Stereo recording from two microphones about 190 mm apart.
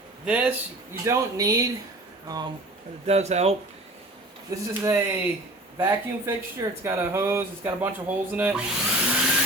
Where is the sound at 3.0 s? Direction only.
35° right (ahead or behind).